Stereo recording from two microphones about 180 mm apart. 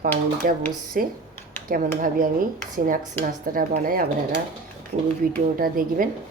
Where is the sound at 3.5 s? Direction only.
50° right (ahead or behind).